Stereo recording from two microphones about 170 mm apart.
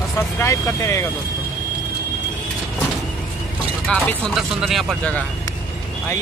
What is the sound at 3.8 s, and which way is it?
Speech, centre (ahead or behind).